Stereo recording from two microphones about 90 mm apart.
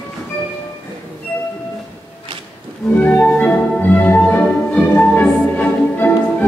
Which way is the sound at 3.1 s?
20° left (ahead or behind).